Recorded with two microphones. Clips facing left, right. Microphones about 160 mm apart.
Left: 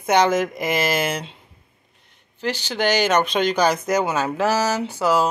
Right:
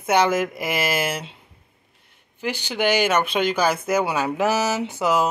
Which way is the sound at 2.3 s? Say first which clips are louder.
Left 1 dB; 15° right (ahead or behind).